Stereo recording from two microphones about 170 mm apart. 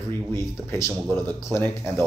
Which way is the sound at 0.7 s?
15° left (ahead or behind).